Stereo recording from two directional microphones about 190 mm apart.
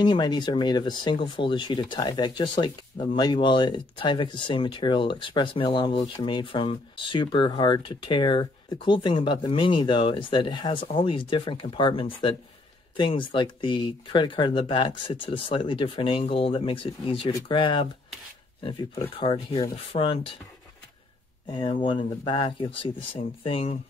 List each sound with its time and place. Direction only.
0.0 s speech: 25° left (ahead or behind)
21.5 s speech: 25° left (ahead or behind)